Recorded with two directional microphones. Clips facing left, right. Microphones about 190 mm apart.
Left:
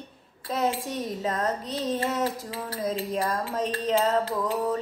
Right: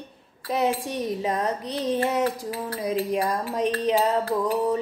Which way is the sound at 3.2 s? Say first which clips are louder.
Right 3 dB; 15° right (ahead or behind).